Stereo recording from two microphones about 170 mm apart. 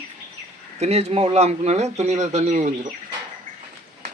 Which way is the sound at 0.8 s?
40° right (ahead or behind).